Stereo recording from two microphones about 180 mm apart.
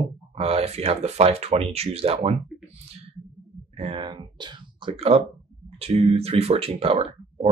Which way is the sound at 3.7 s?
30° right (ahead or behind).